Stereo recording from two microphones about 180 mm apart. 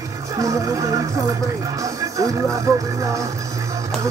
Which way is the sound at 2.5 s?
15° right (ahead or behind).